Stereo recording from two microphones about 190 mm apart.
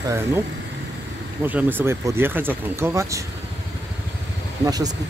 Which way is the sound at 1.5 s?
10° right (ahead or behind).